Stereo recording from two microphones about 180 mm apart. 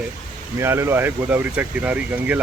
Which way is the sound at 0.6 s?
15° right (ahead or behind).